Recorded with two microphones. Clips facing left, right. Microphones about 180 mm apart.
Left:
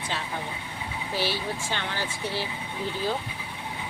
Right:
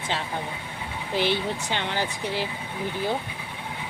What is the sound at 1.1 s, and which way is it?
Speech, 20° right (ahead or behind).